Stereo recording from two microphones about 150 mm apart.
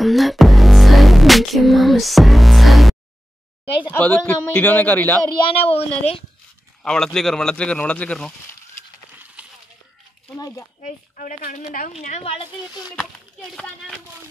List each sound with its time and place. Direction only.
0.0 s music: centre (ahead or behind)
3.9 s a man's voice: 10° left (ahead or behind)
5.7 s a woman's voice: 40° left (ahead or behind)
6.8 s speech: 5° left (ahead or behind)
9.4 s a sound: 10° right (ahead or behind)
10.3 s speech: 25° left (ahead or behind)
10.8 s a woman's voice: 60° left (ahead or behind)
12.0 s a woman's voice: 45° left (ahead or behind)